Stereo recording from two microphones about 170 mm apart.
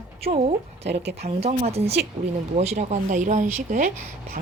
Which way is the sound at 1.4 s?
35° right (ahead or behind).